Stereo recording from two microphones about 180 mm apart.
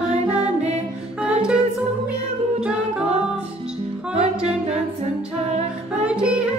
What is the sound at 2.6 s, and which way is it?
Music, 5° right (ahead or behind).